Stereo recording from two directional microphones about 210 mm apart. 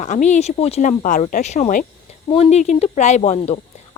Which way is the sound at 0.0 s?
35° left (ahead or behind).